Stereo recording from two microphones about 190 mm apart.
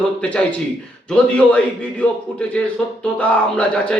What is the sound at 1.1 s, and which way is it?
A man's voice, 5° left (ahead or behind).